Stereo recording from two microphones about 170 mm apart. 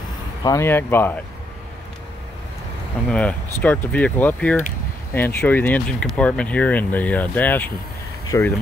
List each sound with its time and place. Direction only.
0.4 s speech: 20° left (ahead or behind)
3.1 s speech: 5° left (ahead or behind)